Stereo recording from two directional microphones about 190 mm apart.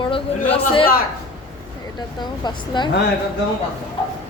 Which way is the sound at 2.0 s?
25° left (ahead or behind).